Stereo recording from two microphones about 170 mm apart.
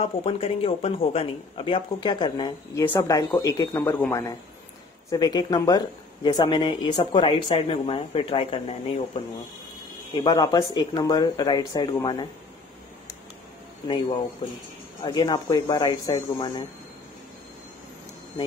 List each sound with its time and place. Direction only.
0.0 s speech: 35° left (ahead or behind)
2.8 s speech: 15° left (ahead or behind)
15.0 s speech: 25° left (ahead or behind)